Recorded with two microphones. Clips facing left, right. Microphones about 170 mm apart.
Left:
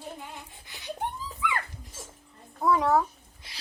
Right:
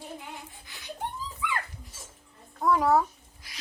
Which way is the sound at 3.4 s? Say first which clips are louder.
Left 1 dB; 25° left (ahead or behind).